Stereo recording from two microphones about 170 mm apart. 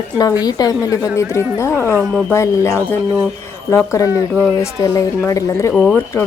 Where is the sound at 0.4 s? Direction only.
20° left (ahead or behind).